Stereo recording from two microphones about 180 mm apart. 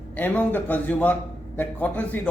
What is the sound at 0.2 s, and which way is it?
A man's voice, 10° left (ahead or behind).